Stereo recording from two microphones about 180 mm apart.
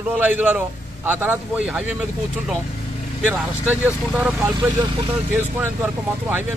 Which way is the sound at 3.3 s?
10° right (ahead or behind).